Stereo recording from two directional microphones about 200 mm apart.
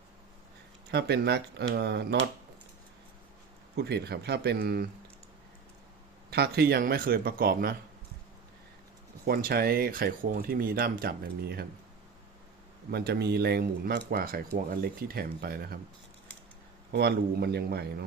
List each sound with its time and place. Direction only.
0.9 s speech: 55° right (ahead or behind)
3.8 s speech: 55° right (ahead or behind)
6.3 s speech: 50° right (ahead or behind)
9.2 s speech: 50° right (ahead or behind)
12.9 s speech: 50° right (ahead or behind)
16.9 s speech: 55° right (ahead or behind)